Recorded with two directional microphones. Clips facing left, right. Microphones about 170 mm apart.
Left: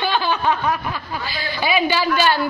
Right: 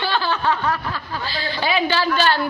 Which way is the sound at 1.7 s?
10° left (ahead or behind).